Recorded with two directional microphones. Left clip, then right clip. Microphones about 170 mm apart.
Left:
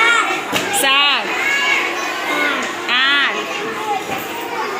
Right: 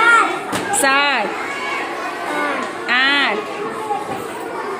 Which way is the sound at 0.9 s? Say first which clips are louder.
Left 1 dB; 75° right (ahead or behind).